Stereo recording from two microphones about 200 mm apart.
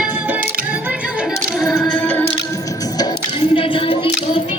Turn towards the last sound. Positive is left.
turn(degrees=25)  # may be behind; listen again after turning